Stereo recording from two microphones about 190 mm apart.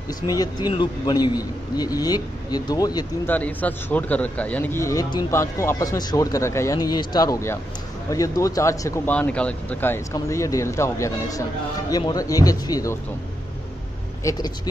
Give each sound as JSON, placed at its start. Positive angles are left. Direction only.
{"t": 0.3, "sound": "a man's voice", "side_deg": 20}
{"t": 3.3, "sound": "a man's voice", "side_deg": 10}
{"t": 14.2, "sound": "speech", "side_deg": 15}